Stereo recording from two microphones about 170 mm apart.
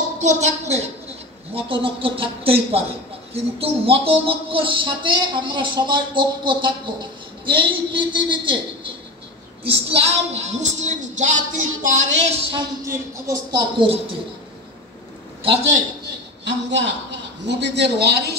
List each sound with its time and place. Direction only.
0.2 s a woman's voice: 45° right (ahead or behind)
12.8 s speech: 20° right (ahead or behind)
15.4 s a woman's voice: 35° right (ahead or behind)
16.4 s a man's voice: 90° right